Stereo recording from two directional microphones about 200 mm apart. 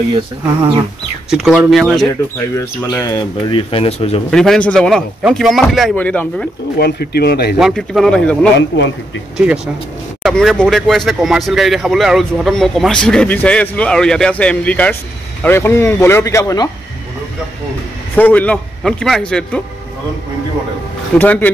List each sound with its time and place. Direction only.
1.3 s speech: centre (ahead or behind)
2.5 s speech: 15° left (ahead or behind)
4.3 s speech: 5° left (ahead or behind)
6.8 s speech: 55° left (ahead or behind)
7.5 s speech: centre (ahead or behind)
8.5 s speech: 65° left (ahead or behind)
10.2 s speech: centre (ahead or behind)
18.1 s speech: 10° left (ahead or behind)
21.2 s speech: 10° left (ahead or behind)